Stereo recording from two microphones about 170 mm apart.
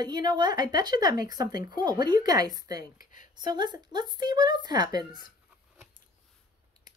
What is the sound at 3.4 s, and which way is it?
Speech, 25° right (ahead or behind).